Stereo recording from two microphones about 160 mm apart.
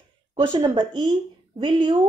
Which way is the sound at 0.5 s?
25° right (ahead or behind).